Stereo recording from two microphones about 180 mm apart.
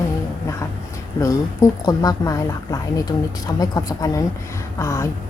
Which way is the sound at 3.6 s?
20° left (ahead or behind).